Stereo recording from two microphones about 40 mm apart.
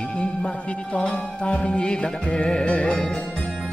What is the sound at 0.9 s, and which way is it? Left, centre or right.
Music, left.